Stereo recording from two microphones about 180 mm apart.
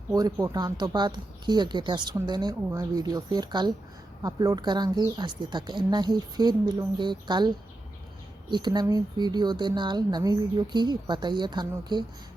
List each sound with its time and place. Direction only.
0.1 s speech: 20° right (ahead or behind)
8.5 s speech: 25° right (ahead or behind)